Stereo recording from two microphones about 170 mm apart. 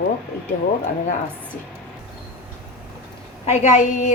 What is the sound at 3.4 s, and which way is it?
Speech, 40° left (ahead or behind).